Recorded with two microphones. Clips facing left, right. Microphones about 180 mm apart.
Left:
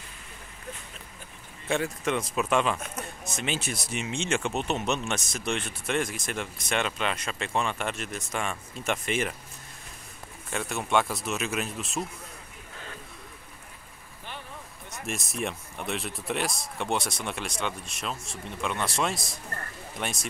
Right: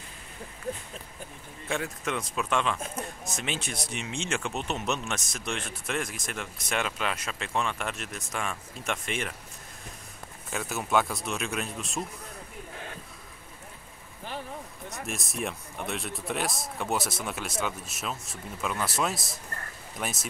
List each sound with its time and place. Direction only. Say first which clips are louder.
1.7 s speech: left 4 dB; centre (ahead or behind)
10.5 s speech: left 1 dB; centre (ahead or behind)
14.9 s speech: left 2 dB; centre (ahead or behind)